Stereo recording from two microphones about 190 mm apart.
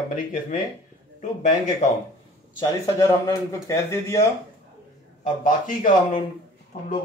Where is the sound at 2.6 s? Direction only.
15° left (ahead or behind).